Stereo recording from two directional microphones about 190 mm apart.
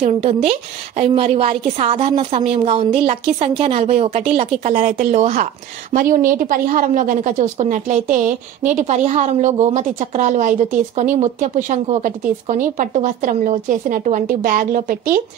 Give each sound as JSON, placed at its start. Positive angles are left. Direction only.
{"t": 0.0, "sound": "a woman's voice", "side_deg": -35}